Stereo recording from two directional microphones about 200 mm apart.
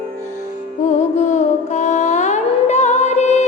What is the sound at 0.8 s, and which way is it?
Music, 35° left (ahead or behind).